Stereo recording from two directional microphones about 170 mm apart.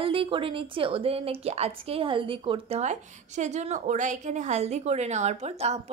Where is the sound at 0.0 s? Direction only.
30° right (ahead or behind).